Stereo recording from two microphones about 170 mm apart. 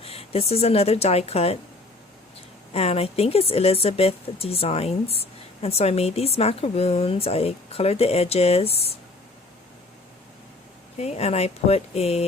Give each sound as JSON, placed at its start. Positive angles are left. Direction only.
{"t": 0.0, "sound": "speech", "side_deg": 35}
{"t": 2.7, "sound": "speech", "side_deg": 35}
{"t": 10.9, "sound": "speech", "side_deg": 40}